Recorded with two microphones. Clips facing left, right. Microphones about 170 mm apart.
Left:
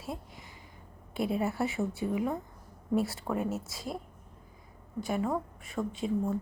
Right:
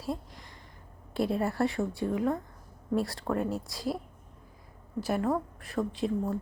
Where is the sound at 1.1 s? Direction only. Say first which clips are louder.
Right 2 dB; centre (ahead or behind).